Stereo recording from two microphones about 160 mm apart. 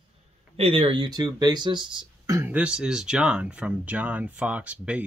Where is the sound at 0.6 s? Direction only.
35° right (ahead or behind).